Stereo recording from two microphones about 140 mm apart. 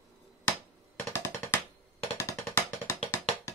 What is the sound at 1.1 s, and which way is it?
Music, 15° left (ahead or behind).